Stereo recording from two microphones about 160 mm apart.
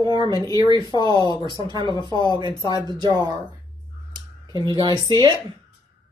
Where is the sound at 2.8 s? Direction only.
25° right (ahead or behind).